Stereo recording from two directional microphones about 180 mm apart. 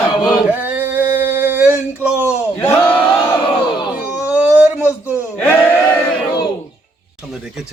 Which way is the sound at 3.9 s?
5° right (ahead or behind).